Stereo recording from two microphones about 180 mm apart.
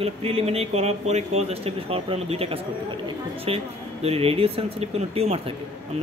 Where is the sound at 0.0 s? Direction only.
35° right (ahead or behind).